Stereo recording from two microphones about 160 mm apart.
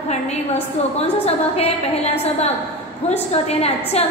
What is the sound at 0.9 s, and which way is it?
Speech, 40° left (ahead or behind).